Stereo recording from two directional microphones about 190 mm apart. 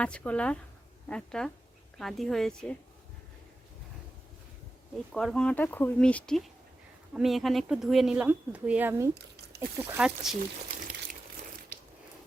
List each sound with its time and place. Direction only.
0.0 s speech: 5° left (ahead or behind)
5.1 s speech: 5° left (ahead or behind); by 10.1 s 15° right (ahead or behind)
10.7 s crumpling: 45° right (ahead or behind)
11.7 s ratchet: 40° right (ahead or behind)